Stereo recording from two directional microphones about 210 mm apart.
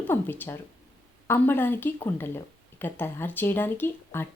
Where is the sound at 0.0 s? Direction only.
10° left (ahead or behind).